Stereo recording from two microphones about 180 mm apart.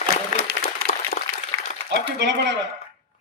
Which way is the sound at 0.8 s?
40° left (ahead or behind).